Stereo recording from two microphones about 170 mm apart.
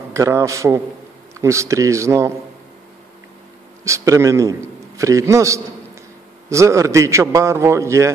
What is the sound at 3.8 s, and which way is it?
A man's voice, 15° right (ahead or behind).